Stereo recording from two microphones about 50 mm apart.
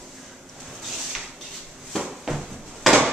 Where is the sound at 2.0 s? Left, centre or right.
Centre.